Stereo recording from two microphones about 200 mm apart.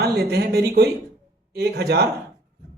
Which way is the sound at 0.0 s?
55° right (ahead or behind).